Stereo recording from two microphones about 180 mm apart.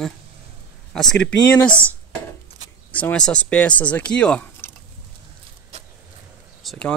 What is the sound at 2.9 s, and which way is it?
Speech, 10° left (ahead or behind).